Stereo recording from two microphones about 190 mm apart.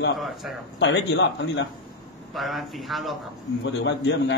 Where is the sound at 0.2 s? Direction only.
Centre (ahead or behind).